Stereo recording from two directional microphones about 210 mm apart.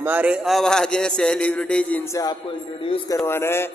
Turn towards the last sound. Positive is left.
turn(degrees=10)  # may be behind; listen again after turning